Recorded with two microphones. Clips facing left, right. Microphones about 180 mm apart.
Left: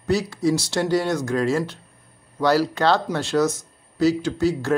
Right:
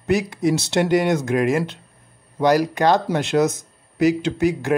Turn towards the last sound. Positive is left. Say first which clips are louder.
# right 1 dB
turn(degrees=-15)  # may be behind; listen again after turning